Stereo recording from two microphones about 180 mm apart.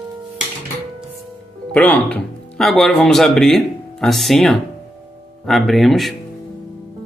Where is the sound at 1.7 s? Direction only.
10° left (ahead or behind).